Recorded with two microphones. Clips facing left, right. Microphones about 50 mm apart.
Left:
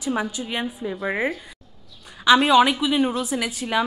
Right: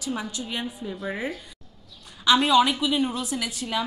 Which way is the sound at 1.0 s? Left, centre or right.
Left.